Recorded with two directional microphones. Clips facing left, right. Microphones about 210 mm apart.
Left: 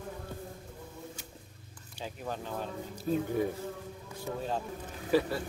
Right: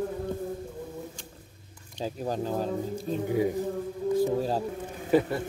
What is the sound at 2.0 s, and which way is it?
Speech, 35° right (ahead or behind).